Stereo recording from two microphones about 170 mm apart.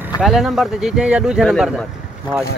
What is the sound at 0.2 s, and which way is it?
Speech, centre (ahead or behind).